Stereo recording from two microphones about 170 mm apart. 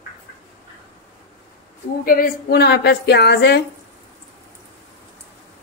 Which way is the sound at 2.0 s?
60° left (ahead or behind).